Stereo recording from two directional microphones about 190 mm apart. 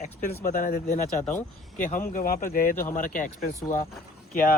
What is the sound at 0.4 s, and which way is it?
Speech, 45° left (ahead or behind).